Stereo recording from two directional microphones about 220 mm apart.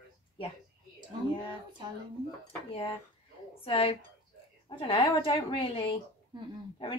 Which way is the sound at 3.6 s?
25° left (ahead or behind).